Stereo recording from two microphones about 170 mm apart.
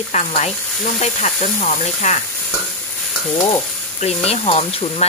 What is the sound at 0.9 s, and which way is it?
Stir, 40° left (ahead or behind).